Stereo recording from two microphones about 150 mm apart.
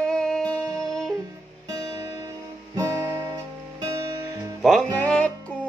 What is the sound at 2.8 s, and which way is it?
Guitar, 20° right (ahead or behind).